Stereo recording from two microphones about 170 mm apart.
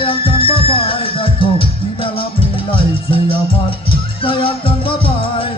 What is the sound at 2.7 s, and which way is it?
Music, 30° left (ahead or behind).